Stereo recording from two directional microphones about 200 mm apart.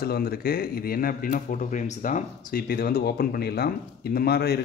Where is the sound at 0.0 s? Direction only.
50° left (ahead or behind).